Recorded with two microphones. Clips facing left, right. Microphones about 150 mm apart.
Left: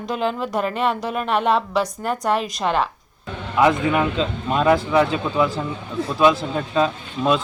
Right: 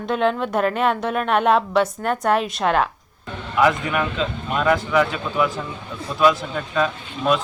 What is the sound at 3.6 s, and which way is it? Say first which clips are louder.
Speech: left 2 dB; 25° left (ahead or behind).